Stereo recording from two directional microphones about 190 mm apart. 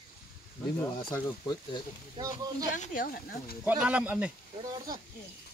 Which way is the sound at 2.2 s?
20° right (ahead or behind).